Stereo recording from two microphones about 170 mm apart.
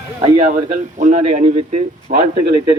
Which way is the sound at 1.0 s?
40° right (ahead or behind).